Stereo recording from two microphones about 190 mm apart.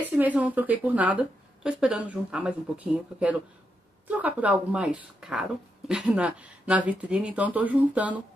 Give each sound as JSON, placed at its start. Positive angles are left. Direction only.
{"t": 0.2, "sound": "speech", "side_deg": -10}